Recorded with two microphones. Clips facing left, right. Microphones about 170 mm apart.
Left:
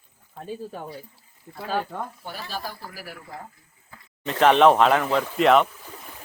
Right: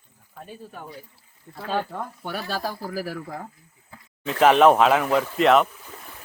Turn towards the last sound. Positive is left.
turn(degrees=0)  # may be behind; listen again after turning